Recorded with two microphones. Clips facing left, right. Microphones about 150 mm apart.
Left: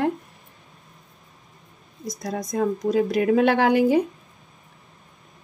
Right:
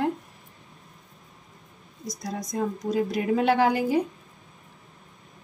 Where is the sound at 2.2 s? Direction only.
60° left (ahead or behind).